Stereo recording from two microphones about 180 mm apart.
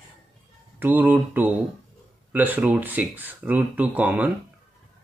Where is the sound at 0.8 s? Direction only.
10° right (ahead or behind).